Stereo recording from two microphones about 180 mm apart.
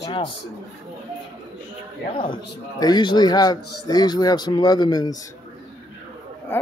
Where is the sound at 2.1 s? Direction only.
25° left (ahead or behind).